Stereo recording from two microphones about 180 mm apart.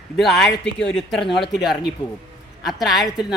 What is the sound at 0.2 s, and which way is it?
Speech, centre (ahead or behind).